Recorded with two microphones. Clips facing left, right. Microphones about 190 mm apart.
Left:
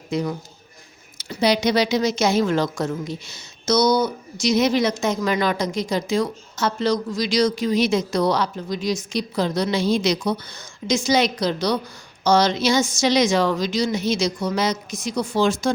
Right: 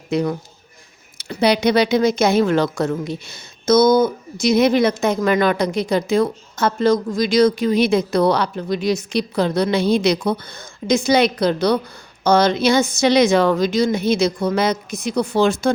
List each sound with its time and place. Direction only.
0.1 s a man's voice: 65° right (ahead or behind)